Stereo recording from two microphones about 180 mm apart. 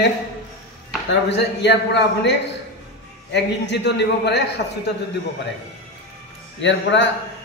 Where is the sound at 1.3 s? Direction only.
75° left (ahead or behind).